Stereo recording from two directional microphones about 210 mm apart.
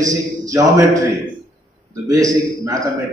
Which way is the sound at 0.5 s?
15° right (ahead or behind).